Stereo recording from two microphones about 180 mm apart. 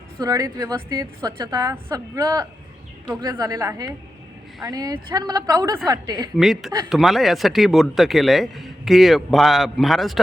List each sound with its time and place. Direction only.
0.2 s a woman's voice: 20° right (ahead or behind)
6.3 s speech: centre (ahead or behind)